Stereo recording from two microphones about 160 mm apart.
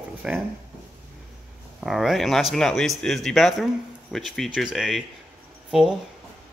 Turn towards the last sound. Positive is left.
turn(degrees=0)  # may be behind; listen again after turning